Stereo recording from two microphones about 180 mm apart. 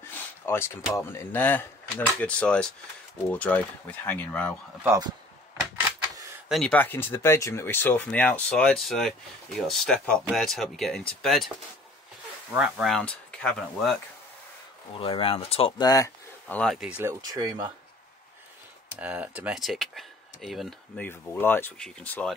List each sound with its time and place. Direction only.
0.5 s speech: 15° left (ahead or behind)
4.8 s speech: 20° right (ahead or behind)
6.5 s speech: 5° left (ahead or behind)
12.5 s speech: 5° right (ahead or behind)
15.0 s speech: 30° left (ahead or behind)
15.9 s a sound: 20° left (ahead or behind)
16.5 s speech: centre (ahead or behind)
17.2 s speech: 20° right (ahead or behind)
18.9 s speech: 10° right (ahead or behind); by 22.3 s 5° left (ahead or behind)